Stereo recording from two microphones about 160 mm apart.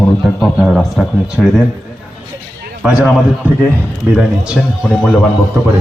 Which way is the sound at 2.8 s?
5° right (ahead or behind).